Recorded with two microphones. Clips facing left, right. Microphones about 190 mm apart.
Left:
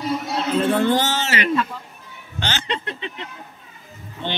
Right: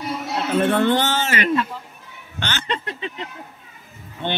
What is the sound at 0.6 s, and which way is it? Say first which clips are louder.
Speech: right 1 dB; 60° right (ahead or behind).